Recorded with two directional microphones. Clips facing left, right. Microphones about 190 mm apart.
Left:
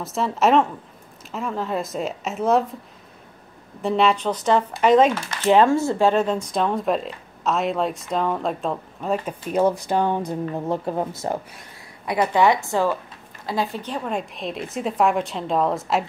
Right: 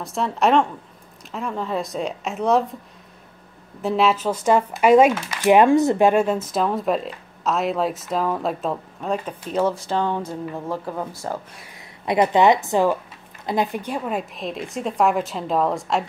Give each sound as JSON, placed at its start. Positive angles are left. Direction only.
{"t": 0.0, "sound": "speech", "side_deg": 0}
{"t": 3.8, "sound": "speech", "side_deg": 0}
{"t": 12.1, "sound": "a woman's voice", "side_deg": -20}